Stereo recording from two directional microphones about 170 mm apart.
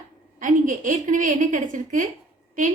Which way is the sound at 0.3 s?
50° right (ahead or behind).